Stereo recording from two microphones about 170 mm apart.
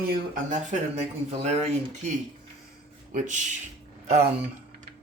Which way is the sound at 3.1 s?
45° right (ahead or behind).